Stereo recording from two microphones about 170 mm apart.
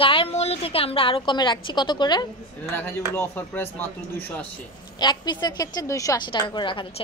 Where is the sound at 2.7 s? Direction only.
10° left (ahead or behind).